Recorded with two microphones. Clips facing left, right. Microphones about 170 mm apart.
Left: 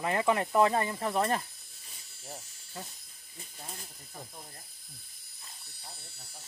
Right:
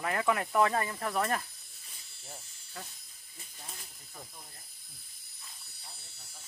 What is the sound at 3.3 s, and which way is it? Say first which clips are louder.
Snake: left 4 dB; 35° left (ahead or behind).